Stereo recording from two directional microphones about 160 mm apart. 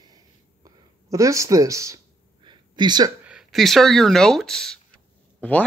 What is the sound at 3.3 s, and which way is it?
Speech, centre (ahead or behind).